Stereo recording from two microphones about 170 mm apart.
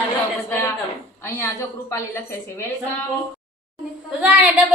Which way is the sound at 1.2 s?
15° left (ahead or behind).